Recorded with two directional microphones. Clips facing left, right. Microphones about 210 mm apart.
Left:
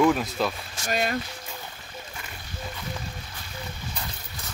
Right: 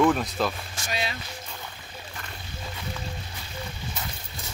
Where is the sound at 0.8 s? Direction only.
50° left (ahead or behind).